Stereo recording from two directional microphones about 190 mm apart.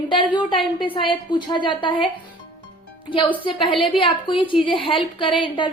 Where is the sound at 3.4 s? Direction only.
25° left (ahead or behind).